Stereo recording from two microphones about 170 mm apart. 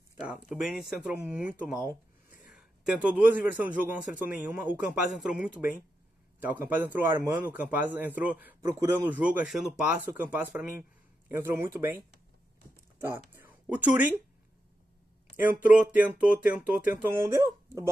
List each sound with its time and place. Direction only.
0.3 s speech: 5° right (ahead or behind)
2.2 s a sound: 55° left (ahead or behind)
2.5 s a man's voice: 5° right (ahead or behind)
13.3 s speech: 10° right (ahead or behind)
15.3 s a man's voice: 10° right (ahead or behind)